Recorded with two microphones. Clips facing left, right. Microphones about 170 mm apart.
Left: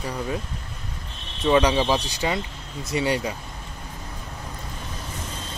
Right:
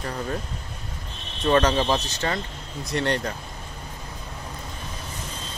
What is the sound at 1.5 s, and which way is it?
Speech, 10° left (ahead or behind).